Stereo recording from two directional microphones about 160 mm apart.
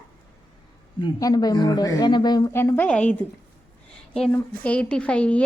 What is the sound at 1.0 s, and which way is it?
Speech, 25° left (ahead or behind).